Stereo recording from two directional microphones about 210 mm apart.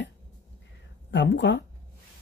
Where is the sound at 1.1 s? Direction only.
55° left (ahead or behind).